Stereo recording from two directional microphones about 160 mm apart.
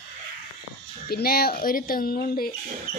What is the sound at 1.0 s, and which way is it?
Speech, 70° left (ahead or behind).